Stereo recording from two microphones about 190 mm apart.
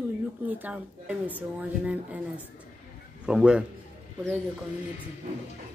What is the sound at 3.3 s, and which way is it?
Speech, 5° right (ahead or behind).